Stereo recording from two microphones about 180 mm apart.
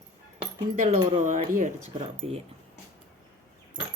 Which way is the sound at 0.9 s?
40° right (ahead or behind).